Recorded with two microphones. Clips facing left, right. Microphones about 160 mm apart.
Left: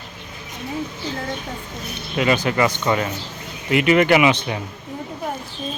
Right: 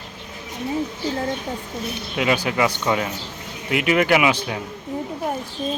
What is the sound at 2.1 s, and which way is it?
Speech, 5° right (ahead or behind).